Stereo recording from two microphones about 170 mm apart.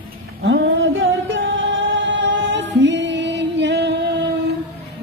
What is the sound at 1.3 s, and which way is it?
Music, 90° right.